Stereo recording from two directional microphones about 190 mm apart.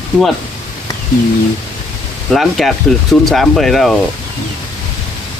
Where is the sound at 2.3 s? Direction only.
Centre (ahead or behind).